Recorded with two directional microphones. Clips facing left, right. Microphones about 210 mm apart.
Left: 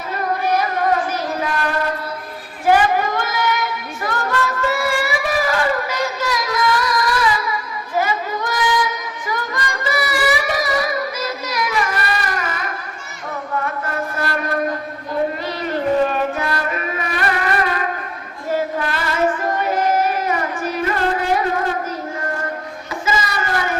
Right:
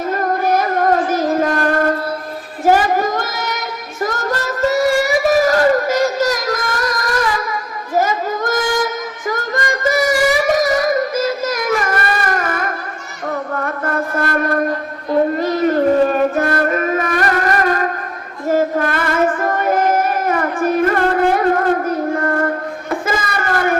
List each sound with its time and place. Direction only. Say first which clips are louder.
0.1 s child singing: right 2 dB; 45° right (ahead or behind)
13.5 s mantra: right 3 dB; 50° right (ahead or behind)
15.4 s a sound: right 8 dB; 45° right (ahead or behind)
18.4 s child singing: right 5 dB; 45° right (ahead or behind)